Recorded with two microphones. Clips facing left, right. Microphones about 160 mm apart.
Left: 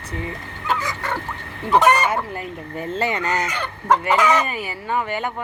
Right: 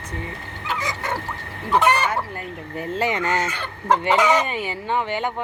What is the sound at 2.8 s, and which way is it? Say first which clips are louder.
Speech: even; 15° right (ahead or behind).